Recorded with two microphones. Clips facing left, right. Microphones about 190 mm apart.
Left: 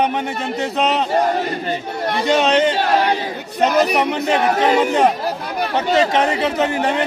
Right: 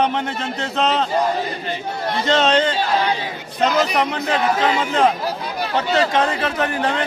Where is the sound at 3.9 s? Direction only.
15° left (ahead or behind).